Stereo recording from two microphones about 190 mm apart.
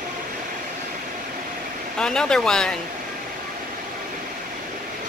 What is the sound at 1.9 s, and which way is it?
Speech, 5° left (ahead or behind).